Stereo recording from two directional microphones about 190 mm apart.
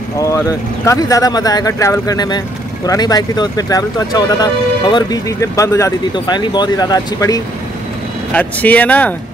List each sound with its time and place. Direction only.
0.2 s speech: 15° left (ahead or behind)
8.3 s speech: 10° left (ahead or behind)